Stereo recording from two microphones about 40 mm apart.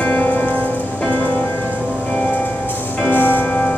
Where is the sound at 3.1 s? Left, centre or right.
Left.